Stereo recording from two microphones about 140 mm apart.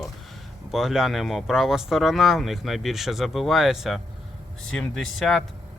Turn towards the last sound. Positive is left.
turn(degrees=0)  # may be behind; listen again after turning